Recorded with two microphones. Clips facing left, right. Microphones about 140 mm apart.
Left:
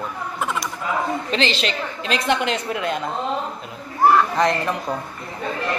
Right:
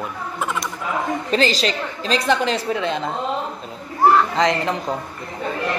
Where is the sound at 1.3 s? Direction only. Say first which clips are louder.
Right 5 dB; 40° right (ahead or behind).